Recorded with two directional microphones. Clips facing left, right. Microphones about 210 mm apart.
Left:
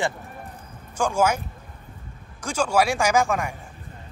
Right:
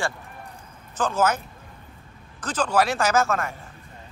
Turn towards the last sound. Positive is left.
turn(degrees=15)  # may be behind; listen again after turning